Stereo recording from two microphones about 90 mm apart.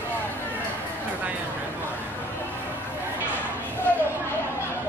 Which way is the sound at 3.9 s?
20° left (ahead or behind).